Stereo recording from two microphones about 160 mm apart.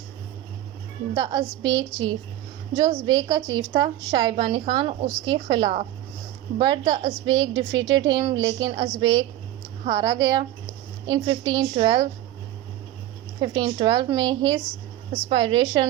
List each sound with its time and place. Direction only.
1.1 s a woman's voice: 25° right (ahead or behind)
13.4 s a woman's voice: 30° right (ahead or behind)